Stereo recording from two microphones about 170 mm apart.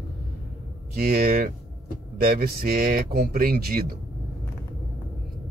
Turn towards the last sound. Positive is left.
turn(degrees=-65)  # may be behind; listen again after turning